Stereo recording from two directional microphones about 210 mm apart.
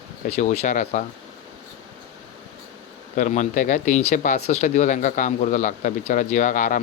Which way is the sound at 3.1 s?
35° left (ahead or behind).